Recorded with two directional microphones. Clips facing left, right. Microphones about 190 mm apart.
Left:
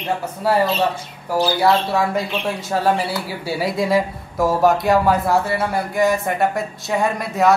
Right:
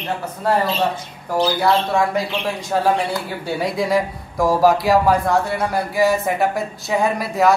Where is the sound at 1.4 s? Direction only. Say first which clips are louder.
Left 1 dB; 5° left (ahead or behind).